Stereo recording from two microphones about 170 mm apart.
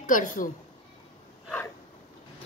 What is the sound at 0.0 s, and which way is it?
Speech, 50° left (ahead or behind).